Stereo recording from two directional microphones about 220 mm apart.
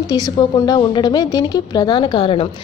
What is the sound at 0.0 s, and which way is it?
A woman's voice, 15° left (ahead or behind).